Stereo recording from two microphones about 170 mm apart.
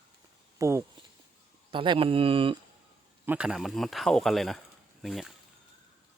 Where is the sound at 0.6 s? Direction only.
15° right (ahead or behind).